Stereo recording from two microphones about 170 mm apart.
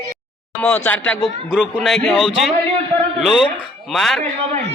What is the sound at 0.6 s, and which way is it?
Speech, 10° left (ahead or behind).